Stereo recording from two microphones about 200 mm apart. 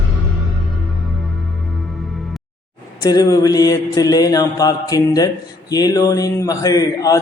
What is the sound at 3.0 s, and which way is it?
A man's voice, 15° left (ahead or behind).